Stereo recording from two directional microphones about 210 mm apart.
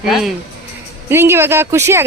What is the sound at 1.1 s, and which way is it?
Speech, 10° right (ahead or behind).